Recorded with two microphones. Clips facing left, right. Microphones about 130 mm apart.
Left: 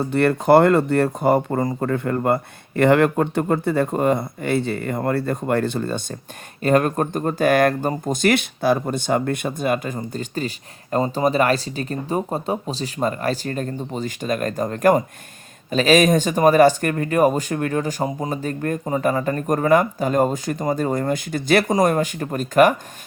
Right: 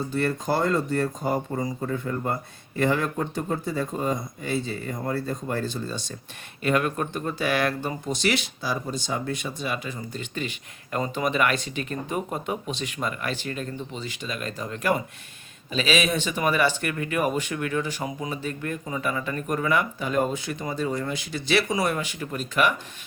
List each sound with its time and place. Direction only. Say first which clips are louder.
0.0 s speech: left 7 dB; 65° left (ahead or behind)
6.6 s speech: left 6 dB; 40° left (ahead or behind)